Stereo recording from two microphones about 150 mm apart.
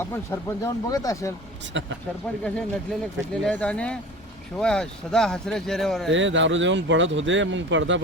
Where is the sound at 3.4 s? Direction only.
10° left (ahead or behind).